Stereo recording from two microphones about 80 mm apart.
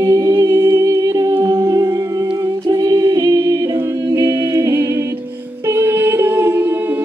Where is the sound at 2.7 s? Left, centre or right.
Right.